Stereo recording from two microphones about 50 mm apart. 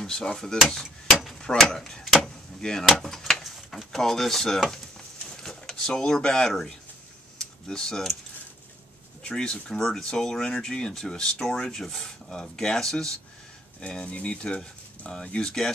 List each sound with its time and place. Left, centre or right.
0.0 s speech: centre
5.2 s a sound: centre
7.3 s speech: centre
9.2 s speech: centre